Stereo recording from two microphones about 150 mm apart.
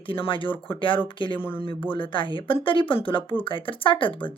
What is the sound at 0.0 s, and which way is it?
Speech, 35° left (ahead or behind).